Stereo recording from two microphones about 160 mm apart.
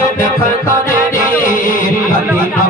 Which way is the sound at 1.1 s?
60° left (ahead or behind).